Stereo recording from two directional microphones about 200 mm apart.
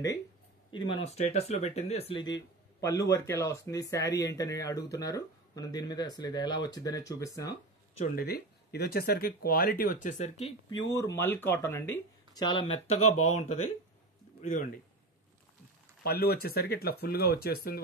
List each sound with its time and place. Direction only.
0.7 s speech: 25° left (ahead or behind)
2.8 s speech: 15° left (ahead or behind)
8.0 s speech: 50° left (ahead or behind)
10.4 s speech: 20° left (ahead or behind)
16.0 s speech: 50° left (ahead or behind)